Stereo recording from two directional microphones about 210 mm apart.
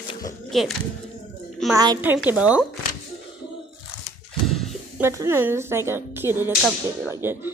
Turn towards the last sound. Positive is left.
turn(degrees=-10)  # may be behind; listen again after turning